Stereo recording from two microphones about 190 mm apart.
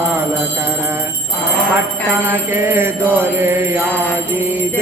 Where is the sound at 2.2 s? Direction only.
10° right (ahead or behind).